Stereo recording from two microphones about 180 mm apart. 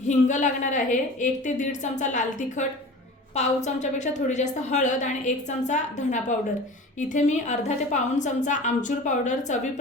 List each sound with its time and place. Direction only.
0.1 s a woman's voice: 45° left (ahead or behind)